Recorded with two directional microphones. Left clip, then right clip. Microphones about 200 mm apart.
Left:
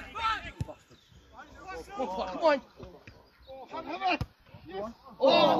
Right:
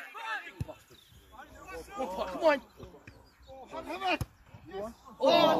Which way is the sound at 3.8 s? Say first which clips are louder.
Left 2 dB; 50° left (ahead or behind).